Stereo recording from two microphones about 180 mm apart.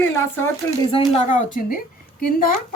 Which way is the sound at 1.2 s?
45° left (ahead or behind).